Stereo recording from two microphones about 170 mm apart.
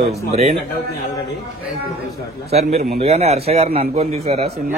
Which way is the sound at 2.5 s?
40° right (ahead or behind).